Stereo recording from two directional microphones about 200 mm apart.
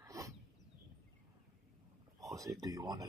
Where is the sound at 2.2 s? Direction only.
15° right (ahead or behind).